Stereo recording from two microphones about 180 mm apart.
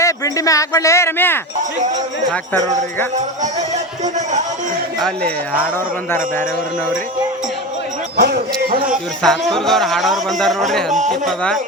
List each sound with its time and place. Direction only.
0.0 s speech: 20° left (ahead or behind)
4.0 s music: 40° right (ahead or behind)
4.9 s a man's voice: 5° left (ahead or behind)
8.1 s a sound: 65° right (ahead or behind)
9.5 s speech: centre (ahead or behind)